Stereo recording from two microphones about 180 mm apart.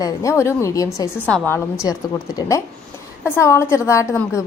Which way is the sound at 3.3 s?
15° left (ahead or behind).